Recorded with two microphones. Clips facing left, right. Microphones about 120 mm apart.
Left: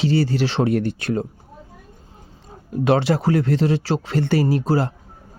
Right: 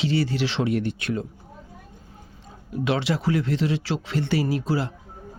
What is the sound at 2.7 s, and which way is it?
Speech, 40° left (ahead or behind).